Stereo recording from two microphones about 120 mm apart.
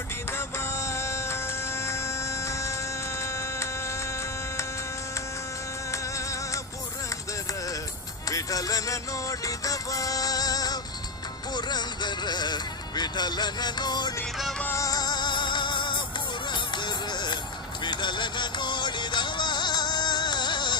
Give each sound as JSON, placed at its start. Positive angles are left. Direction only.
{"t": 0.3, "sound": "music", "side_deg": 20}
{"t": 5.9, "sound": "music", "side_deg": 25}
{"t": 8.3, "sound": "music", "side_deg": 30}
{"t": 14.6, "sound": "music", "side_deg": 25}